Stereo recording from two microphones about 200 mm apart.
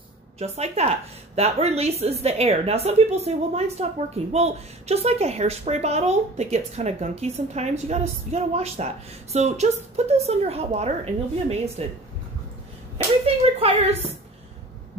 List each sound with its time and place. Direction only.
0.4 s a woman's voice: 30° right (ahead or behind)
12.9 s speech: 30° right (ahead or behind)